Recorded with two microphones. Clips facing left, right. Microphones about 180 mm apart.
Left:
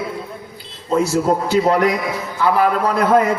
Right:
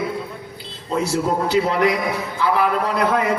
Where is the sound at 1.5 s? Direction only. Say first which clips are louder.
Left 2 dB; 45° left (ahead or behind).